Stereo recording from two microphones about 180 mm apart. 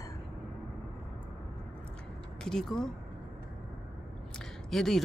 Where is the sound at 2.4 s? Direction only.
Centre (ahead or behind).